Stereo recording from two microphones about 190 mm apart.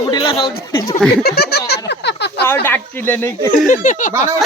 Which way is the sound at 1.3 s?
55° left (ahead or behind).